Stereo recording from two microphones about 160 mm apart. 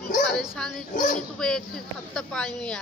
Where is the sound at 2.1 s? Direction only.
5° left (ahead or behind).